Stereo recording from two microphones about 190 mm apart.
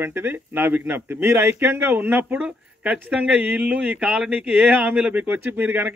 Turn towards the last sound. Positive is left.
turn(degrees=-10)  # may be behind; listen again after turning